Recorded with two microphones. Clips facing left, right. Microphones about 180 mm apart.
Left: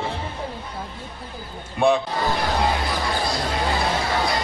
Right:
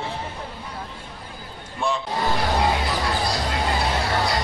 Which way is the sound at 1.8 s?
60° left (ahead or behind).